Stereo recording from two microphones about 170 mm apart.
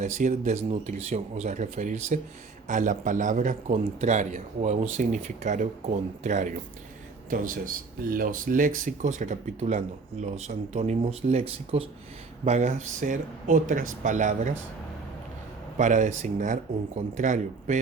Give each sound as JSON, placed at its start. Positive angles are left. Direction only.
{"t": 0.0, "sound": "speech", "side_deg": -45}
{"t": 15.8, "sound": "speech", "side_deg": -45}